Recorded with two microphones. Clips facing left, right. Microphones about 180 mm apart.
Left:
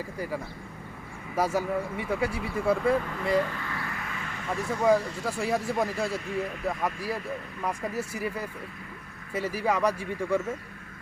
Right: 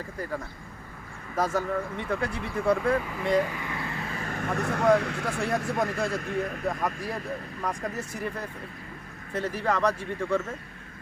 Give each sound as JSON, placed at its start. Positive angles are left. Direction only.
{"t": 1.4, "sound": "speech", "side_deg": 10}
{"t": 3.4, "sound": "a sound", "side_deg": -15}
{"t": 4.1, "sound": "vehicle", "side_deg": -40}
{"t": 4.5, "sound": "speech", "side_deg": -65}
{"t": 5.4, "sound": "speech", "side_deg": 5}
{"t": 6.1, "sound": "speech", "side_deg": -50}
{"t": 6.7, "sound": "speech", "side_deg": 5}